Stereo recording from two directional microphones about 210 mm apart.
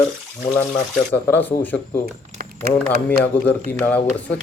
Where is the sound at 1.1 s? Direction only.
10° left (ahead or behind).